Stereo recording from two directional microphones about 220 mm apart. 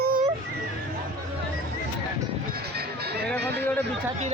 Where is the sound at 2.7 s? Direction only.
45° right (ahead or behind).